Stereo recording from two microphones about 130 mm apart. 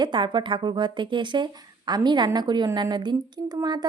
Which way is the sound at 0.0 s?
35° right (ahead or behind).